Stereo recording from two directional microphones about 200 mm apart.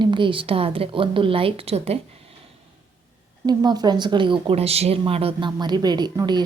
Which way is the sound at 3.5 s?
20° right (ahead or behind).